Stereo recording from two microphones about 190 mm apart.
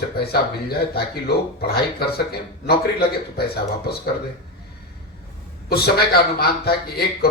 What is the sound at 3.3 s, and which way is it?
Speech, 55° left (ahead or behind).